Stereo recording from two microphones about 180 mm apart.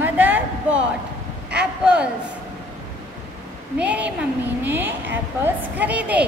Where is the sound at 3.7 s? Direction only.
5° right (ahead or behind).